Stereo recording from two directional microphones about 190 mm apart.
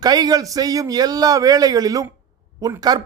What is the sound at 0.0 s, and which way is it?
A man's voice, 20° right (ahead or behind).